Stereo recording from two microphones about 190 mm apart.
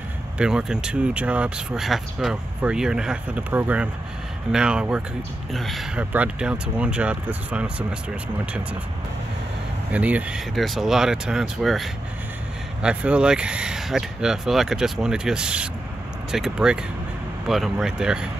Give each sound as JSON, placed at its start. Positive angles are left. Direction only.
{"t": 0.4, "sound": "speech", "side_deg": -5}
{"t": 9.9, "sound": "speech", "side_deg": -5}